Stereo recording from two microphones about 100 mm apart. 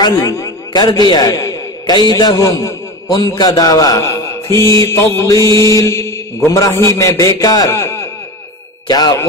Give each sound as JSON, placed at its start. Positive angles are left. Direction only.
{"t": 0.7, "sound": "a man's voice", "side_deg": 45}
{"t": 8.8, "sound": "ding", "side_deg": 45}